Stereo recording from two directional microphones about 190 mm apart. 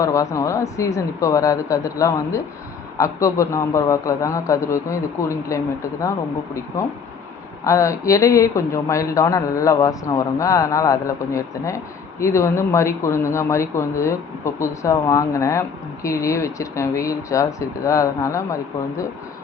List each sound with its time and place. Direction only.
0.0 s speech: 15° left (ahead or behind)